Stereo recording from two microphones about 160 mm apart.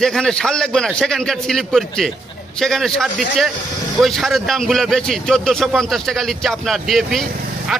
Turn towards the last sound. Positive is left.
turn(degrees=0)  # may be behind; listen again after turning